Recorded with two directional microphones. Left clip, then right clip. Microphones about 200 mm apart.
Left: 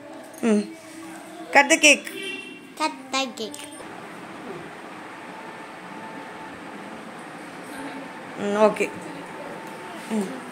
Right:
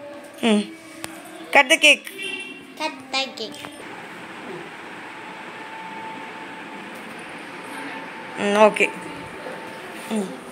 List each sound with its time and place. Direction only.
0.4 s a woman's voice: centre (ahead or behind)
2.8 s a sound: 55° left (ahead or behind)
8.4 s speech: 5° right (ahead or behind)